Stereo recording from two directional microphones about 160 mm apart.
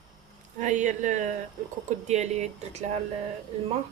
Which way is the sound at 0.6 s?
50° right (ahead or behind).